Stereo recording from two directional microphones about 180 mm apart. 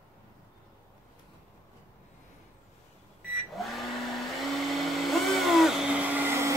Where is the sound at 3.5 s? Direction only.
Centre (ahead or behind).